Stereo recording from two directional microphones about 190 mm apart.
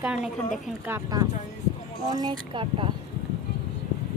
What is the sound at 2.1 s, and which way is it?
Speech, 25° right (ahead or behind).